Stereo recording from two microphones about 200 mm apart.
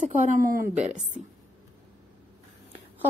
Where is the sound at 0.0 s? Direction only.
40° right (ahead or behind).